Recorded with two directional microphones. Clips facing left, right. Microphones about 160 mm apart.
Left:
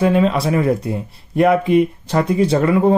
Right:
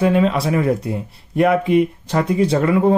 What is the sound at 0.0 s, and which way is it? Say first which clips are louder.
Speech: left 1 dB; 35° left (ahead or behind).